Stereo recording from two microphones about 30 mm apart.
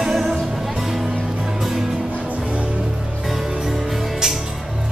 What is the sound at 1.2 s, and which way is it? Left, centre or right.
Music, right.